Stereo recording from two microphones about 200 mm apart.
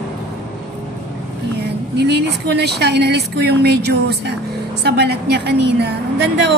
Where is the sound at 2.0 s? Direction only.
55° right (ahead or behind).